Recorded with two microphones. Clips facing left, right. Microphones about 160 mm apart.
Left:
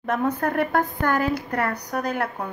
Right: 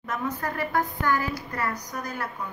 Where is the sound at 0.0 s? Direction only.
60° left (ahead or behind).